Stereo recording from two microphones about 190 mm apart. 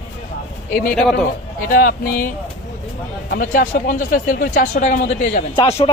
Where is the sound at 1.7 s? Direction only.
50° left (ahead or behind).